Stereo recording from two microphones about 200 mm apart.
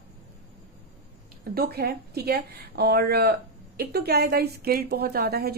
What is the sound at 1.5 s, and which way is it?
A woman's voice, 50° right (ahead or behind).